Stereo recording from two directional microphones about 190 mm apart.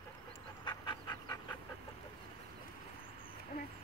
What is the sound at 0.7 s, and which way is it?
Pant, 20° left (ahead or behind).